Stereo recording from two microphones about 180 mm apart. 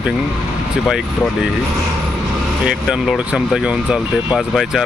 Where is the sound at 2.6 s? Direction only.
5° right (ahead or behind).